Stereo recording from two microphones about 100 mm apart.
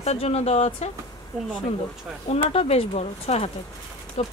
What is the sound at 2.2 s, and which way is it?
Speech, 90° left.